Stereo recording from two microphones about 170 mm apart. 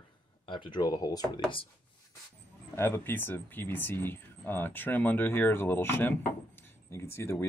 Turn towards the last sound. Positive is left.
turn(degrees=15)  # may be behind; listen again after turning